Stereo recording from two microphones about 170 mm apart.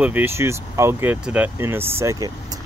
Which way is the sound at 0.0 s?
10° right (ahead or behind).